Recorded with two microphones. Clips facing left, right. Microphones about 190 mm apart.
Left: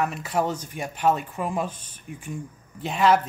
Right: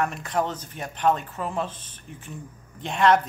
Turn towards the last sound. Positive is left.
turn(degrees=5)  # may be behind; listen again after turning